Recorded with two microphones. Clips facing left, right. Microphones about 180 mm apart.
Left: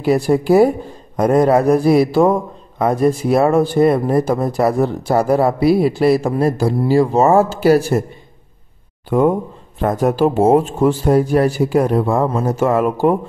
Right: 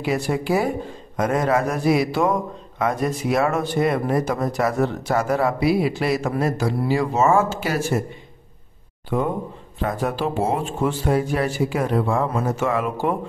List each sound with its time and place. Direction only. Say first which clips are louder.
0.0 s speech: left 8 dB; 40° left (ahead or behind)
9.8 s speech: left 8 dB; 45° left (ahead or behind)